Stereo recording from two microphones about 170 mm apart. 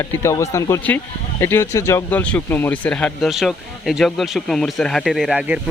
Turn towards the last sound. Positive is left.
turn(degrees=-5)  # may be behind; listen again after turning